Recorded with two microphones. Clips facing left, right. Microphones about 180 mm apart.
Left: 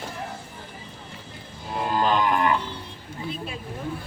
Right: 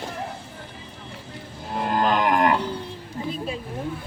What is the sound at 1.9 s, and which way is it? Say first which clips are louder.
Cattle: right 1 dB; 50° right (ahead or behind).